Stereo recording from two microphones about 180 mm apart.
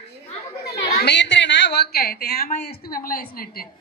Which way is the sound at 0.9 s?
70° left (ahead or behind).